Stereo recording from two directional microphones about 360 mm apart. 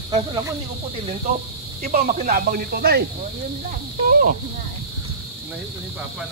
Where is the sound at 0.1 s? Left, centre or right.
Centre.